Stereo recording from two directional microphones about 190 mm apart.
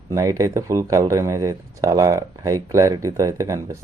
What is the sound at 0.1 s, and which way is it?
Speech, 15° right (ahead or behind).